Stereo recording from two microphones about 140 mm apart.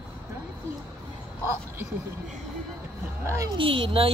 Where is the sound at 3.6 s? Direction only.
40° right (ahead or behind).